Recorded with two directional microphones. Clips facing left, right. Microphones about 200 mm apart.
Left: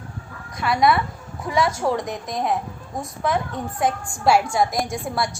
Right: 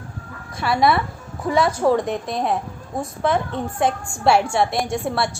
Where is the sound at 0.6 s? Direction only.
30° right (ahead or behind).